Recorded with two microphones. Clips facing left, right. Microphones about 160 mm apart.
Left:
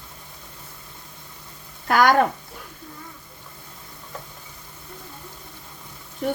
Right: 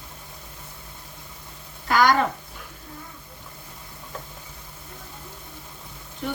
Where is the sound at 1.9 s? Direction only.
55° left (ahead or behind).